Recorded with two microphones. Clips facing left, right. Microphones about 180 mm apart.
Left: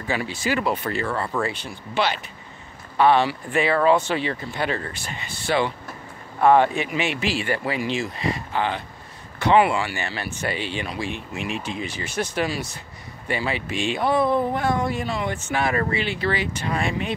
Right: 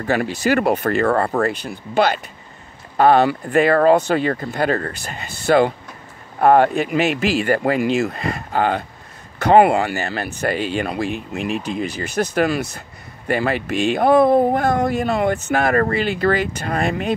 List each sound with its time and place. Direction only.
0.0 s speech: 60° right (ahead or behind)
12.2 s speech: 50° right (ahead or behind)